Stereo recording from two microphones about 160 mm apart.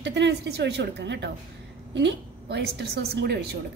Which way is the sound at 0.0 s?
90° right.